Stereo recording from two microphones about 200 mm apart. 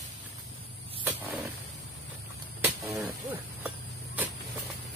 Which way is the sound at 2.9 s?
10° right (ahead or behind).